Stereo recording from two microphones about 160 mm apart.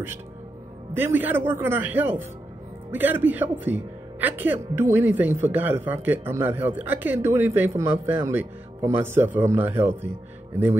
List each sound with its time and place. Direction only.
0.9 s speech: 15° right (ahead or behind)